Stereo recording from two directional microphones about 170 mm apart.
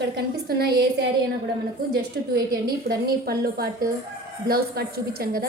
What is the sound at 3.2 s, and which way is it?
A woman's voice, 65° right (ahead or behind).